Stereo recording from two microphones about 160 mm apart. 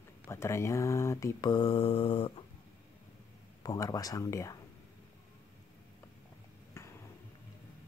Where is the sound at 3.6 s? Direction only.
25° left (ahead or behind).